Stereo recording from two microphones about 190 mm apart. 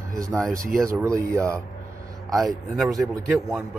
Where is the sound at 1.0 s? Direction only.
15° right (ahead or behind).